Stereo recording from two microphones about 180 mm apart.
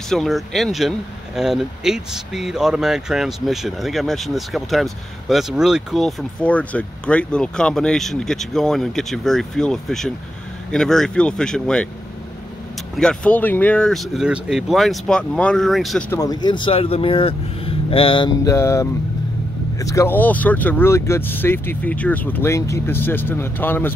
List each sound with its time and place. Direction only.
0.1 s speech: centre (ahead or behind)
12.9 s speech: 5° left (ahead or behind)
16.1 s speech: 20° left (ahead or behind)